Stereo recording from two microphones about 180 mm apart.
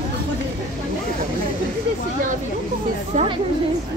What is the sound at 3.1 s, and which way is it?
Speech, 35° right (ahead or behind).